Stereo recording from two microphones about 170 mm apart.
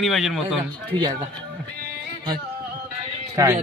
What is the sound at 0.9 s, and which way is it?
Speech, 25° right (ahead or behind).